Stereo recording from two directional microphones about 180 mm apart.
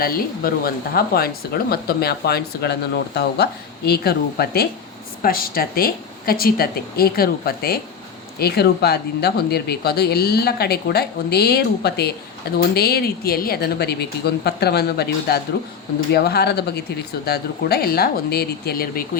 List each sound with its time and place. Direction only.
0.0 s speech: 55° left (ahead or behind)